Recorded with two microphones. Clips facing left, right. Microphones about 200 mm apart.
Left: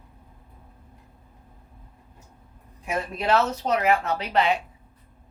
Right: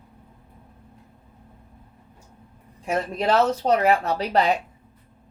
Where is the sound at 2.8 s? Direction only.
30° right (ahead or behind).